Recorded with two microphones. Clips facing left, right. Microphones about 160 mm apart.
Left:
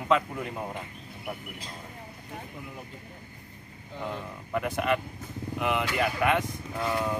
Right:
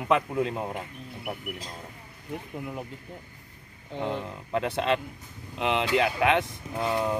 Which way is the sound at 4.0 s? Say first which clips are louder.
Right 4 dB; 25° right (ahead or behind).